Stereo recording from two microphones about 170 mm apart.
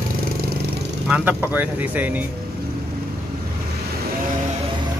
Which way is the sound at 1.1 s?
10° right (ahead or behind).